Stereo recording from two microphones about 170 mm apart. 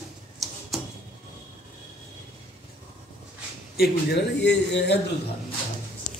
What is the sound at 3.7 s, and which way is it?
A man's voice, 70° left (ahead or behind).